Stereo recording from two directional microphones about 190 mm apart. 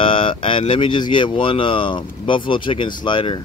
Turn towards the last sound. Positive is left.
turn(degrees=25)  # may be behind; listen again after turning